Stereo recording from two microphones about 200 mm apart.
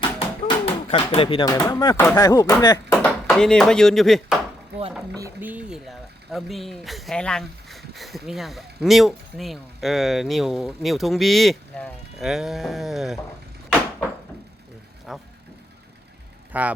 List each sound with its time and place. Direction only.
0.0 s a sound: 25° left (ahead or behind)
2.1 s speech: 20° left (ahead or behind)
3.0 s speech: 5° left (ahead or behind)
5.1 s speech: 10° right (ahead or behind)
15.1 s speech: centre (ahead or behind)
16.5 s speech: 5° right (ahead or behind)